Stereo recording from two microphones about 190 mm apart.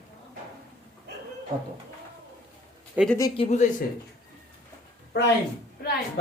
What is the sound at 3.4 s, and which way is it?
Speech, 35° left (ahead or behind).